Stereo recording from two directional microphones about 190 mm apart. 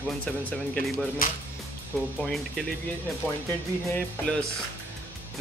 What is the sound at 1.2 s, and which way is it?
Speech, 45° left (ahead or behind).